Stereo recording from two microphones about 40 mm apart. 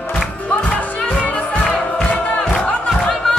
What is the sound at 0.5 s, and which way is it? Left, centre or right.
Music, left.